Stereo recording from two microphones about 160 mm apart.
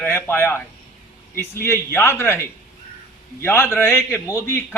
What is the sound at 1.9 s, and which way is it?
A man's voice, 15° left (ahead or behind).